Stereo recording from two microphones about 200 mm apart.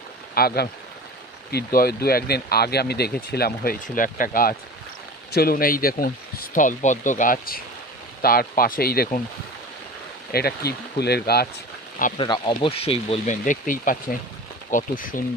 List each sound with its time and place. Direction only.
0.3 s speech: 50° left (ahead or behind)
10.3 s speech: 50° left (ahead or behind)
12.1 s speech: 25° left (ahead or behind); by 15.2 s 45° left (ahead or behind)